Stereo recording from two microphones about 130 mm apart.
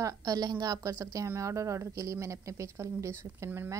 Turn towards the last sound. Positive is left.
turn(degrees=-20)  # may be behind; listen again after turning